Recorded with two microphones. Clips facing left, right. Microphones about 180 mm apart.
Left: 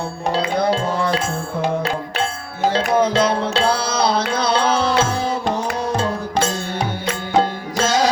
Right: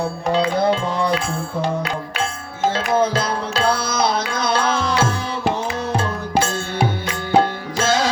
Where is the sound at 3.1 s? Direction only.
30° left (ahead or behind).